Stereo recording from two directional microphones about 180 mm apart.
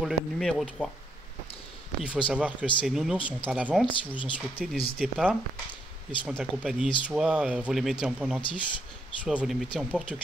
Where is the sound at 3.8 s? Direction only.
30° left (ahead or behind).